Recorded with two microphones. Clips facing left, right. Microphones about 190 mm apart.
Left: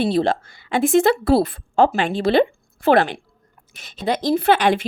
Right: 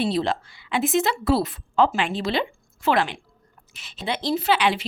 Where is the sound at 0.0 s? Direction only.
50° left (ahead or behind).